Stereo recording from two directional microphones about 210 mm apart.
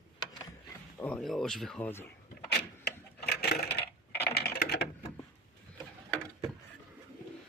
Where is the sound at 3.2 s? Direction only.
50° left (ahead or behind).